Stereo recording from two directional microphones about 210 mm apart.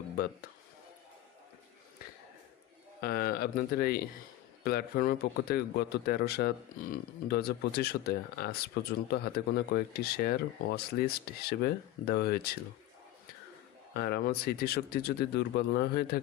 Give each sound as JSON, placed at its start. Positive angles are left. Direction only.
{"t": 3.0, "sound": "speech", "side_deg": 45}
{"t": 13.9, "sound": "speech", "side_deg": 50}